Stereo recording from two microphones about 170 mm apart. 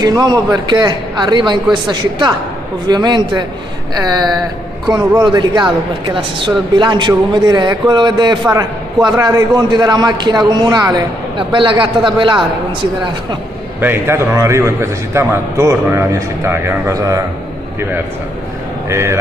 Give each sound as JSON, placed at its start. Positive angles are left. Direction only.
{"t": 0.0, "sound": "a man's voice", "side_deg": -20}
{"t": 13.7, "sound": "a man's voice", "side_deg": -15}
{"t": 18.9, "sound": "a man's voice", "side_deg": -15}